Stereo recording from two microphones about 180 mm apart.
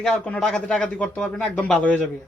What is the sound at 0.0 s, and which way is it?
Speech, centre (ahead or behind).